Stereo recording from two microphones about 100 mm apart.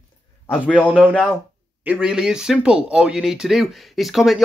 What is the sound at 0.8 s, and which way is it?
Speech, 15° right (ahead or behind).